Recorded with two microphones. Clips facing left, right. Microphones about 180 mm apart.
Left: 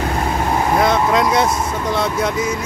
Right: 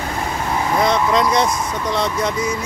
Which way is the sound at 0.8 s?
5° left (ahead or behind).